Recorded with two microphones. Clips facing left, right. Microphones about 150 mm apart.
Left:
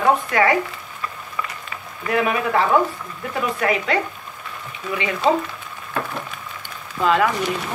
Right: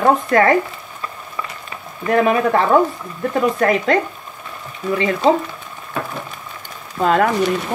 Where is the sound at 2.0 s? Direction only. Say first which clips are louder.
Right 6 dB; 40° right (ahead or behind).